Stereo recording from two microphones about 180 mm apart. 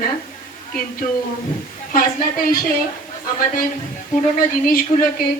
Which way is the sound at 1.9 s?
50° left (ahead or behind).